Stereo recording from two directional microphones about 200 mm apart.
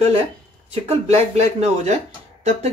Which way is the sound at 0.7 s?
35° right (ahead or behind).